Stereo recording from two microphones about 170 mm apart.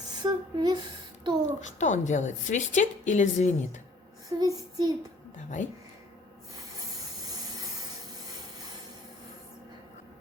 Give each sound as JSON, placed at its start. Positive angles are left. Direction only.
{"t": 0.1, "sound": "a sound", "side_deg": -25}
{"t": 1.6, "sound": "a woman's voice", "side_deg": 45}
{"t": 4.3, "sound": "child singing", "side_deg": -20}
{"t": 5.4, "sound": "a woman's voice", "side_deg": 45}